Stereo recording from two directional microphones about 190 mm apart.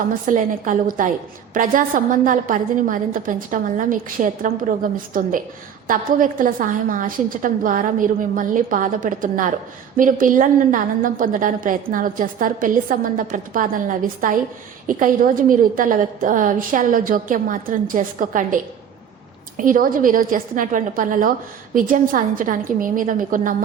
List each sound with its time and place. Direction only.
0.1 s a woman's voice: 45° right (ahead or behind)